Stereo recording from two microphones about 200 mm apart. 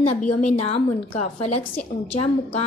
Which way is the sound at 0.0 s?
35° left (ahead or behind).